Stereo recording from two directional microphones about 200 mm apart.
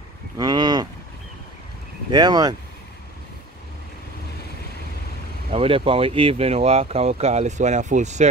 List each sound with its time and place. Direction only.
0.4 s cattle: 20° right (ahead or behind)
2.0 s speech: 20° right (ahead or behind)
5.5 s speech: 25° right (ahead or behind)